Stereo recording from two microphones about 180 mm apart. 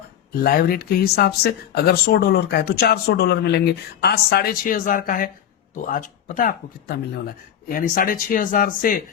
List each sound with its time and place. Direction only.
0.4 s speech: 55° left (ahead or behind)